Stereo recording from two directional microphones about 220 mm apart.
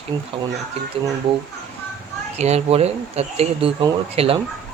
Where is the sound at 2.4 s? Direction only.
30° right (ahead or behind).